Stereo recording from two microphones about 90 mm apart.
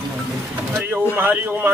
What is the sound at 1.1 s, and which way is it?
Speech, 20° right (ahead or behind).